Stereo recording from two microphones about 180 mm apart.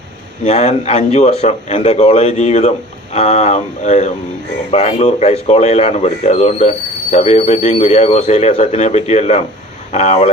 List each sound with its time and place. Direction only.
0.4 s speech: 40° left (ahead or behind)